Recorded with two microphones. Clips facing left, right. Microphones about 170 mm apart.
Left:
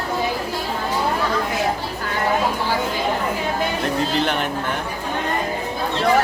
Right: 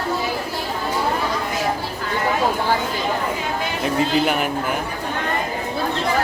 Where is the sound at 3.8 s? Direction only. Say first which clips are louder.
Right 6 dB; 5° right (ahead or behind).